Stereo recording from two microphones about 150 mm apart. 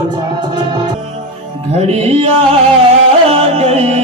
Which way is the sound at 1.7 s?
40° right (ahead or behind).